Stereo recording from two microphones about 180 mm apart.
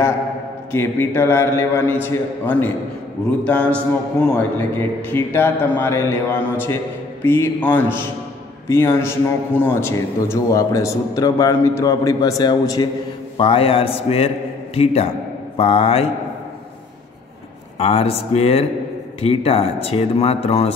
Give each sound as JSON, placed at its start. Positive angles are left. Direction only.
{"t": 0.7, "sound": "a man's voice", "side_deg": 15}
{"t": 13.4, "sound": "speech", "side_deg": 30}
{"t": 17.7, "sound": "speech", "side_deg": 35}